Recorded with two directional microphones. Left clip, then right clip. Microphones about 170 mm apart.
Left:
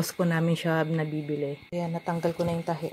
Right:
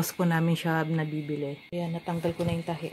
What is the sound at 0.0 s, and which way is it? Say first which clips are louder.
Speech: left 1 dB; 5° left (ahead or behind).